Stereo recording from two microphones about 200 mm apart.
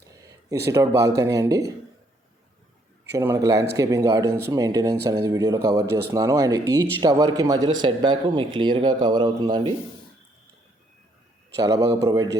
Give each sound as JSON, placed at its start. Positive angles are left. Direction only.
{"t": 0.7, "sound": "speech", "side_deg": -15}
{"t": 3.2, "sound": "speech", "side_deg": -15}
{"t": 11.6, "sound": "speech", "side_deg": -15}